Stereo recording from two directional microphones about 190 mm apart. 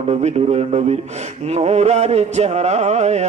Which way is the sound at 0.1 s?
35° right (ahead or behind).